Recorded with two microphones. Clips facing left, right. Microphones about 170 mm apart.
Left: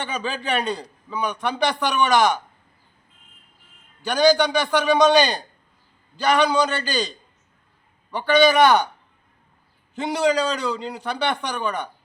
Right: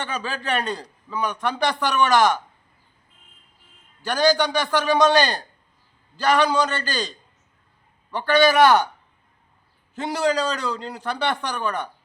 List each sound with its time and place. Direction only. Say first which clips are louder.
0.0 s a man's voice: left 1 dB; centre (ahead or behind)
4.0 s a man's voice: left 2 dB; centre (ahead or behind)
9.9 s a man's voice: left 2 dB; 5° right (ahead or behind)